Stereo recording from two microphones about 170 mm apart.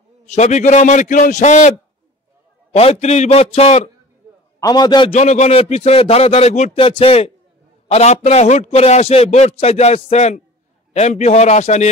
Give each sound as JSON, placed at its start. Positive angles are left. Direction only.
{"t": 0.3, "sound": "a man's voice", "side_deg": 45}
{"t": 2.7, "sound": "a man's voice", "side_deg": 40}
{"t": 4.6, "sound": "a man's voice", "side_deg": 20}
{"t": 5.1, "sound": "a man's voice", "side_deg": 40}